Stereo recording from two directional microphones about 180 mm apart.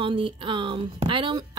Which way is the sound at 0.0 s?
30° right (ahead or behind).